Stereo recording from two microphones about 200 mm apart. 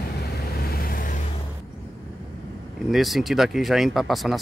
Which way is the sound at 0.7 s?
45° left (ahead or behind).